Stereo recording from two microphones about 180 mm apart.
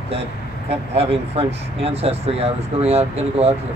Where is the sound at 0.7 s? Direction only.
35° right (ahead or behind).